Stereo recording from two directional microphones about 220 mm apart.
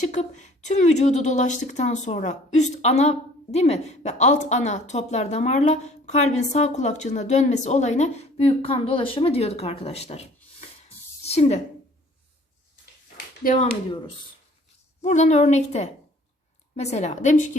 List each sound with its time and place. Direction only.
0.0 s a woman's voice: 30° left (ahead or behind)
13.4 s a woman's voice: 35° left (ahead or behind)
15.0 s a woman's voice: 30° left (ahead or behind)